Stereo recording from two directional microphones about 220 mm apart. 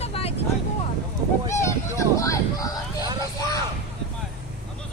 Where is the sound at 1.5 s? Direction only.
15° left (ahead or behind).